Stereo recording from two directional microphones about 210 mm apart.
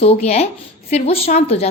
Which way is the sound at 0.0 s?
30° left (ahead or behind).